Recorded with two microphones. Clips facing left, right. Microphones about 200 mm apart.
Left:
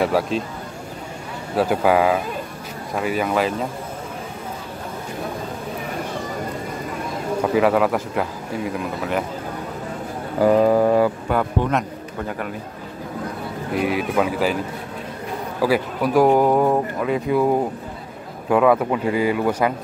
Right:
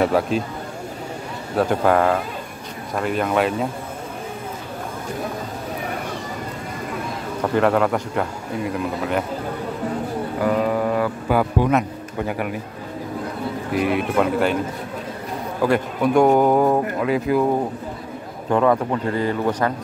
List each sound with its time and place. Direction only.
0.0 s speech: centre (ahead or behind)
1.6 s speech: 5° left (ahead or behind)
7.5 s speech: 5° left (ahead or behind)
10.4 s a sound: 35° left (ahead or behind)
11.2 s a man's voice: 5° right (ahead or behind)
13.7 s speech: centre (ahead or behind)
15.6 s speech: 5° left (ahead or behind)
18.5 s speech: 5° left (ahead or behind)